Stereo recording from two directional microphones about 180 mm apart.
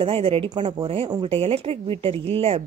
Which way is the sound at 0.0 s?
30° right (ahead or behind).